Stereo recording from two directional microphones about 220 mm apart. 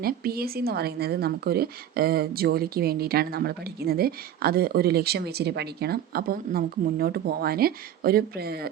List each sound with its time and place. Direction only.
0.0 s speech: 45° right (ahead or behind)